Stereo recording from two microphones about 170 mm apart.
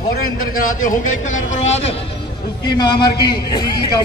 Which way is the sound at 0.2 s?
55° left (ahead or behind).